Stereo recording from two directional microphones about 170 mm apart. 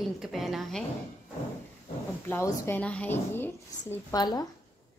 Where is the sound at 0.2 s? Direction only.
Centre (ahead or behind).